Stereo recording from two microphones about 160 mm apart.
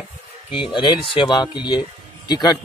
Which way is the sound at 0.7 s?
30° left (ahead or behind).